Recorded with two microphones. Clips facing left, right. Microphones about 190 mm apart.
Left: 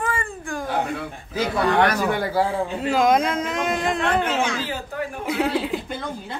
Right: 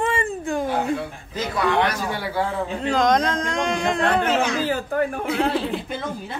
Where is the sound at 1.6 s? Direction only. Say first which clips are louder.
Left 2 dB; 50° left (ahead or behind).